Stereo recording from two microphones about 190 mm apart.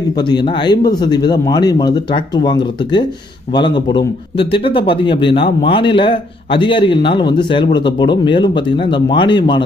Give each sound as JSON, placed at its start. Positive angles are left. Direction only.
{"t": 0.1, "sound": "a man's voice", "side_deg": 25}